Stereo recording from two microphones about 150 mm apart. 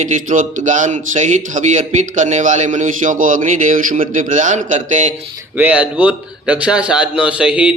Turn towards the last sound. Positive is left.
turn(degrees=-5)  # may be behind; listen again after turning